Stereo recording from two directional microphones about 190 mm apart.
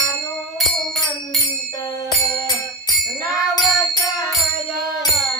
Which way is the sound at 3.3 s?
20° left (ahead or behind).